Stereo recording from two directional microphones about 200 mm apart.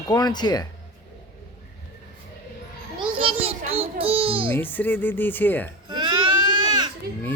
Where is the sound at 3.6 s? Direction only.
30° right (ahead or behind).